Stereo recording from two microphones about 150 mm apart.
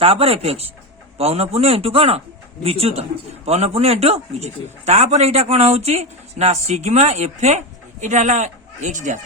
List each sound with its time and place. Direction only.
0.0 s a man's voice: 40° right (ahead or behind); by 9.1 s 55° right (ahead or behind)